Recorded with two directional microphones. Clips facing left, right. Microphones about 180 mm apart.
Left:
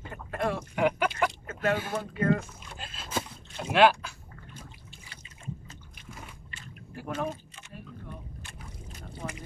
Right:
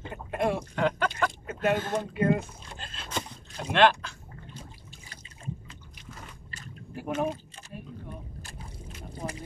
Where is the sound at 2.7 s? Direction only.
5° left (ahead or behind).